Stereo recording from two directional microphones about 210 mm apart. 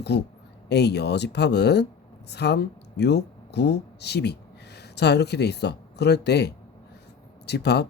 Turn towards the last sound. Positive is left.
turn(degrees=50)  # may be behind; listen again after turning